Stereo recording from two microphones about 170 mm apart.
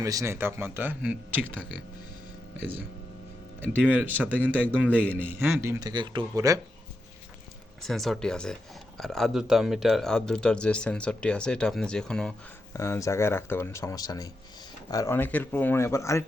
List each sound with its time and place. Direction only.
0.0 s speech: 20° right (ahead or behind)
3.7 s speech: 10° right (ahead or behind)
4.4 s speech: 10° left (ahead or behind)
5.4 s speech: 15° right (ahead or behind)
5.9 s speech: 25° right (ahead or behind)
7.8 s speech: centre (ahead or behind)
12.7 s speech: 15° left (ahead or behind)